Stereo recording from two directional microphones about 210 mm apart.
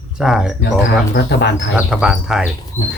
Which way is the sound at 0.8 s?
55° left (ahead or behind).